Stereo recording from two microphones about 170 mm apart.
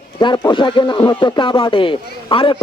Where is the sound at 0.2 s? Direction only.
25° left (ahead or behind).